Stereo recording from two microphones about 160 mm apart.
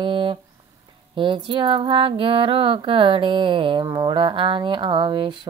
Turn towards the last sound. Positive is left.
turn(degrees=-30)  # may be behind; listen again after turning